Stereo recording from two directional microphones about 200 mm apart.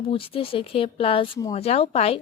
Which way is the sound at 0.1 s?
25° left (ahead or behind).